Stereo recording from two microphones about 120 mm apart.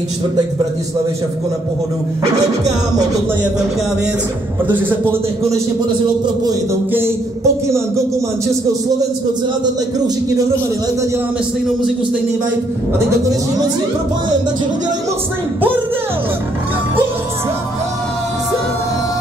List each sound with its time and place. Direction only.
6.9 s speech: 20° right (ahead or behind)
9.9 s speech: 35° right (ahead or behind)